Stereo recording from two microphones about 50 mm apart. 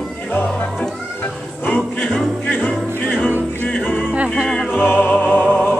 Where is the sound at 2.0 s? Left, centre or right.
Centre.